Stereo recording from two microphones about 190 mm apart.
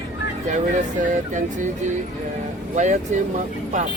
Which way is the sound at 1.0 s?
40° right (ahead or behind).